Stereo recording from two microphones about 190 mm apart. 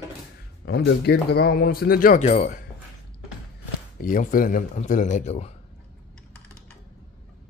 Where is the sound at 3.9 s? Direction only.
45° left (ahead or behind).